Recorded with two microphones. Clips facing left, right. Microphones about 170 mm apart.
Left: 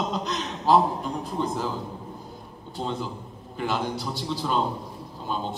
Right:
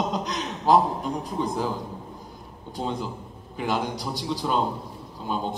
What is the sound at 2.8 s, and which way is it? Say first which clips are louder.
A man's voice: right 1 dB; 15° right (ahead or behind).